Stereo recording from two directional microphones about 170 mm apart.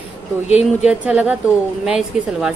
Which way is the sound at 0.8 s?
5° right (ahead or behind).